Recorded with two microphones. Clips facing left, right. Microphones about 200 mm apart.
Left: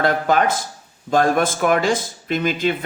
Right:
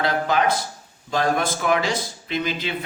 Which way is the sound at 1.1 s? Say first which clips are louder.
Left 5 dB; 50° left (ahead or behind).